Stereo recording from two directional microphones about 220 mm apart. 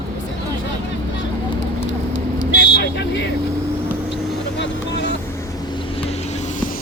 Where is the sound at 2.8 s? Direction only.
50° left (ahead or behind).